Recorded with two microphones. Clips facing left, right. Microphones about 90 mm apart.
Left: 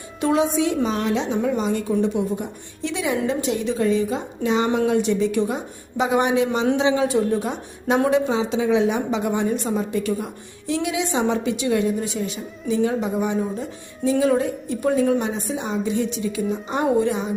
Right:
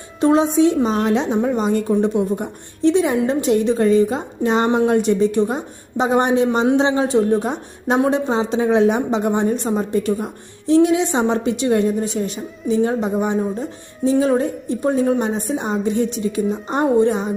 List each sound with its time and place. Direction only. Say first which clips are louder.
0.2 s a woman's voice: right 5 dB; 30° right (ahead or behind)
7.9 s a woman's voice: right 1 dB; 25° right (ahead or behind)
8.3 s a woman's voice: right 3 dB; 40° right (ahead or behind)